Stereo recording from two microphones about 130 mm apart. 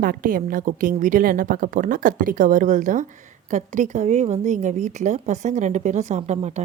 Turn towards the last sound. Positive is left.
turn(degrees=-60)  # may be behind; listen again after turning